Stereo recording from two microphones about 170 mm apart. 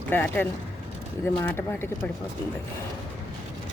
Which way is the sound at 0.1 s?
10° left (ahead or behind).